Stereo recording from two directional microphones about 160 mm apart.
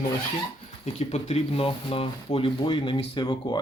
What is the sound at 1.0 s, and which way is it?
Speech, 40° left (ahead or behind).